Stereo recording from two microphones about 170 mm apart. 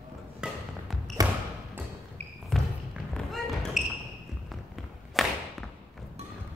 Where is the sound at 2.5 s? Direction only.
5° left (ahead or behind).